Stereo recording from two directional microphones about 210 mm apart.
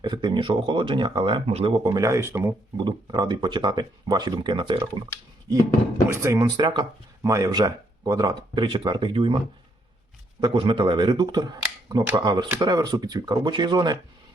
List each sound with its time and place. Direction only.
0.0 s speech: 20° right (ahead or behind)
6.1 s speech: 15° right (ahead or behind)
10.4 s speech: 25° right (ahead or behind)